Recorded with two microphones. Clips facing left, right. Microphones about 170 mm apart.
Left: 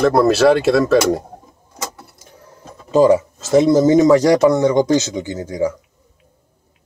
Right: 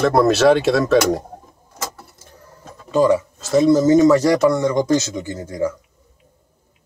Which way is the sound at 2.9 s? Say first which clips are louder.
Left 3 dB; 20° left (ahead or behind).